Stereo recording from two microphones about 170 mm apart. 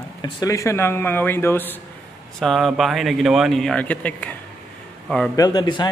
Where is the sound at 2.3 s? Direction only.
Centre (ahead or behind).